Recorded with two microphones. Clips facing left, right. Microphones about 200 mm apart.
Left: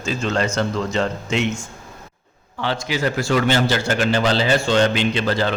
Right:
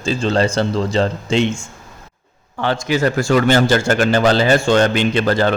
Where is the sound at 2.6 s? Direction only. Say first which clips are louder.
Right 5 dB; 50° right (ahead or behind).